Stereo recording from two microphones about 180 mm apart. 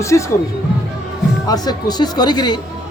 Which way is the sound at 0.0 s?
15° left (ahead or behind).